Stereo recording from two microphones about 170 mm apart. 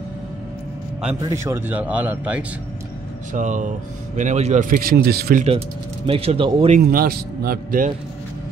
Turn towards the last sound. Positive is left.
turn(degrees=-60)  # may be behind; listen again after turning